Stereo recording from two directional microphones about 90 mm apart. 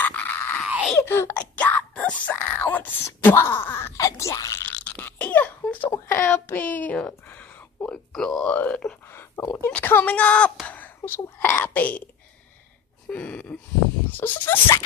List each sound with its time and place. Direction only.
0.0 s a sound: 15° left (ahead or behind)
1.0 s speech: 25° left (ahead or behind)
4.6 s a sound: 15° left (ahead or behind)
6.0 s speech: 25° left (ahead or behind)
8.1 s speech: 5° left (ahead or behind)
8.5 s speech: 15° left (ahead or behind)
9.1 s speech: 30° left (ahead or behind)
9.7 s speech: 20° left (ahead or behind)
10.7 s a sound: 20° left (ahead or behind)
11.1 s speech: 25° left (ahead or behind)
13.1 s speech: 10° left (ahead or behind)
14.1 s speech: 25° left (ahead or behind)